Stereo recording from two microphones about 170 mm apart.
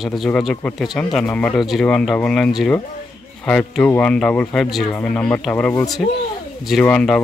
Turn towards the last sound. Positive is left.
turn(degrees=5)  # may be behind; listen again after turning